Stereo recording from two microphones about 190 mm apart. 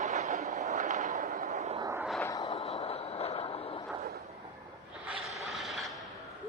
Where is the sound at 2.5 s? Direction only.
30° left (ahead or behind).